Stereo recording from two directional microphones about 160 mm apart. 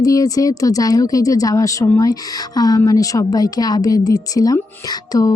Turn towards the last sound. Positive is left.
turn(degrees=25)  # may be behind; listen again after turning